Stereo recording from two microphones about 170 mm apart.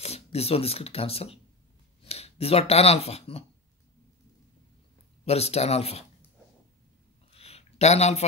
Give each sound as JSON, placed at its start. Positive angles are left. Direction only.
{"t": 0.0, "sound": "speech", "side_deg": 35}
{"t": 5.2, "sound": "speech", "side_deg": 35}
{"t": 7.3, "sound": "a sound", "side_deg": 35}